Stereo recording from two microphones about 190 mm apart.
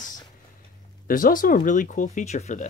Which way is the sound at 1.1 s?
45° left (ahead or behind).